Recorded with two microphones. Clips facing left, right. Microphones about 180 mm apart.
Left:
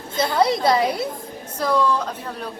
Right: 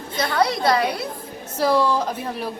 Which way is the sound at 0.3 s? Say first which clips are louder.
Left 2 dB; 25° left (ahead or behind).